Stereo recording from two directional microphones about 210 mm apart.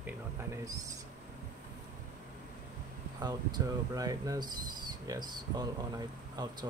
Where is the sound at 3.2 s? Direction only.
20° right (ahead or behind).